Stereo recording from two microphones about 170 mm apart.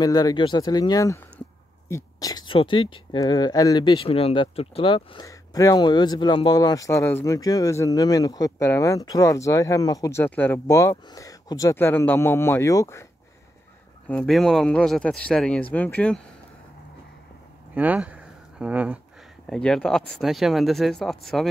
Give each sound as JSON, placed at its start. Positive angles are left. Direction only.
{"t": 0.0, "sound": "speech", "side_deg": 20}
{"t": 14.0, "sound": "speech", "side_deg": 5}
{"t": 17.7, "sound": "speech", "side_deg": -10}